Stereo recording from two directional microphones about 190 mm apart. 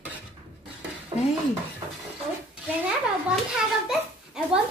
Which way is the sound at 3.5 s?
5° right (ahead or behind).